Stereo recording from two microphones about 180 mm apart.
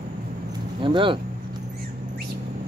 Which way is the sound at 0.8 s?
25° right (ahead or behind).